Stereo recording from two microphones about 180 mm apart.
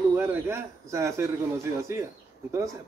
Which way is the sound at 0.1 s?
15° right (ahead or behind).